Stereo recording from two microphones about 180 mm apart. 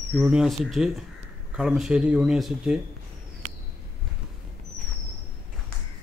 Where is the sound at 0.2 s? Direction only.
5° right (ahead or behind).